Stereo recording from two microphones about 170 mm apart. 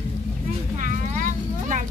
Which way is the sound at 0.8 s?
50° right (ahead or behind).